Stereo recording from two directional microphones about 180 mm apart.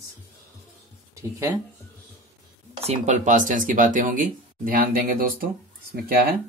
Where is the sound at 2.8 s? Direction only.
40° right (ahead or behind).